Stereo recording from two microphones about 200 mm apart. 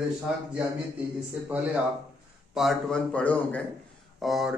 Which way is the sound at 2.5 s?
Centre (ahead or behind).